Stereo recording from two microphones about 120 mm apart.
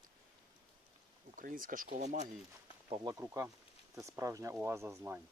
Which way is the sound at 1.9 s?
75° right (ahead or behind).